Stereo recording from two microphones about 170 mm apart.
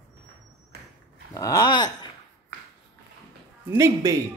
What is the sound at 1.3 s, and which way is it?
Speech, 20° left (ahead or behind).